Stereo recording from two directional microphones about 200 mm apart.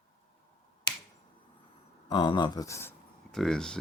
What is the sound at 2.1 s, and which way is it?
Speech, 25° left (ahead or behind).